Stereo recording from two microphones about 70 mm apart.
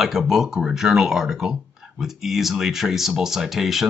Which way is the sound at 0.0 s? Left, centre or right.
Centre.